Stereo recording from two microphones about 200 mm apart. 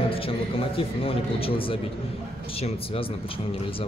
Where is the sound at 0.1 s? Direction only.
25° left (ahead or behind).